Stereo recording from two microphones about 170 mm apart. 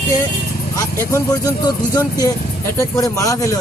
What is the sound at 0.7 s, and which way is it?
Speech, 15° left (ahead or behind).